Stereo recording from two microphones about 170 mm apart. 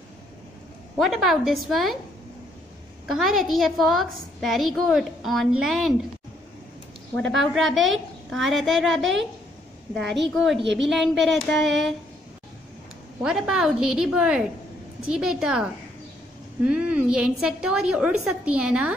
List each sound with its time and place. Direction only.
0.9 s a woman's voice: centre (ahead or behind)
3.1 s a woman's voice: centre (ahead or behind)
7.5 s a woman's voice: centre (ahead or behind)
13.2 s a woman's voice: 5° right (ahead or behind)